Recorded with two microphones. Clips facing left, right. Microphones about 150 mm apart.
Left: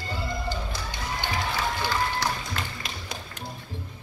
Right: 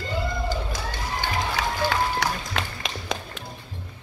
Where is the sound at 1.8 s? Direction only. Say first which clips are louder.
Right 5 dB; 80° right.